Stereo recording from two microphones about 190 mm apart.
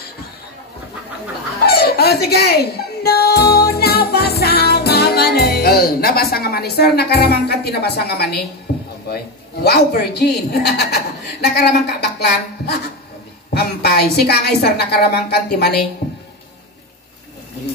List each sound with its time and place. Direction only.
1.7 s music: 55° left (ahead or behind)
9.1 s a woman's voice: 55° left (ahead or behind)
13.5 s a woman's voice: 55° left (ahead or behind)